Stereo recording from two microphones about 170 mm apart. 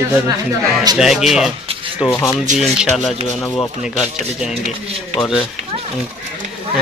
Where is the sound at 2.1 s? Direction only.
15° left (ahead or behind).